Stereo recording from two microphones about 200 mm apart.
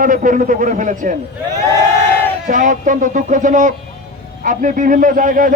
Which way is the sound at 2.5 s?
40° right (ahead or behind).